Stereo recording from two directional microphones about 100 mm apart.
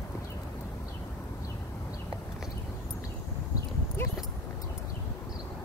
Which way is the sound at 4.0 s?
25° left (ahead or behind).